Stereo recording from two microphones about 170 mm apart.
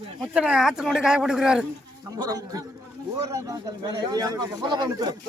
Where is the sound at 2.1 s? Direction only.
20° right (ahead or behind).